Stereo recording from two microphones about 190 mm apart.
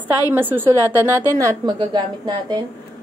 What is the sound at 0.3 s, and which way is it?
A woman's voice, 10° right (ahead or behind).